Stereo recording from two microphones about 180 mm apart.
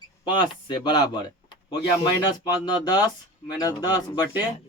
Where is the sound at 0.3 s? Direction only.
25° left (ahead or behind).